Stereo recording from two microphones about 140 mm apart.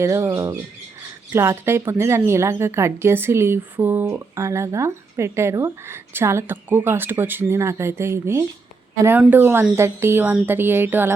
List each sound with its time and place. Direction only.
0.0 s a woman's voice: 20° right (ahead or behind)